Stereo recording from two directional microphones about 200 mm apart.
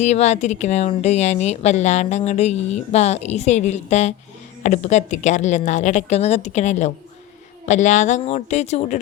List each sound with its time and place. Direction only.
0.0 s speech: 35° left (ahead or behind)